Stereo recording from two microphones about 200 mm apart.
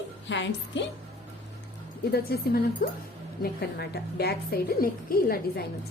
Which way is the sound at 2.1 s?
50° left (ahead or behind).